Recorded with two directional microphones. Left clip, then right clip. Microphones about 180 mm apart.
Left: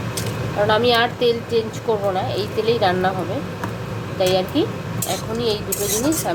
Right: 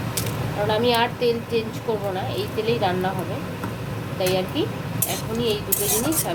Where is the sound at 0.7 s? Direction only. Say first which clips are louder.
Left 3 dB; 20° left (ahead or behind).